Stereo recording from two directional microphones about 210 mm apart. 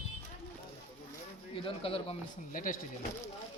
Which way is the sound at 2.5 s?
40° left (ahead or behind).